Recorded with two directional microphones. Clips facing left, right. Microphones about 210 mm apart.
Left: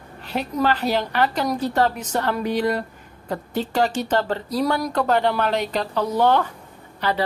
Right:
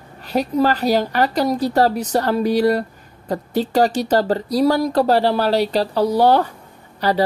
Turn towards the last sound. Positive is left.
turn(degrees=-40)  # may be behind; listen again after turning